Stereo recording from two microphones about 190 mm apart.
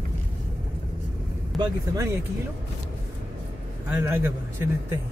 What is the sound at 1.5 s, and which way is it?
Speech, 15° right (ahead or behind).